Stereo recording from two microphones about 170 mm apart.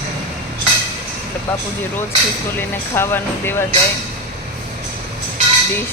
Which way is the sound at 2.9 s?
15° left (ahead or behind).